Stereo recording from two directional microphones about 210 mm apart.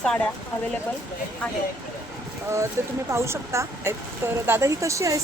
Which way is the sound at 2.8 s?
15° right (ahead or behind).